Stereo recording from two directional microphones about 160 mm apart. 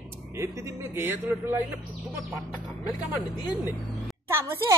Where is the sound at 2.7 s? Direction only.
20° left (ahead or behind).